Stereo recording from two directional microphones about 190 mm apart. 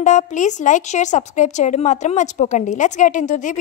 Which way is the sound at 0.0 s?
40° left (ahead or behind).